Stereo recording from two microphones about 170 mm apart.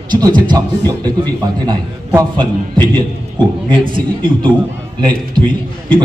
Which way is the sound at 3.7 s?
30° right (ahead or behind).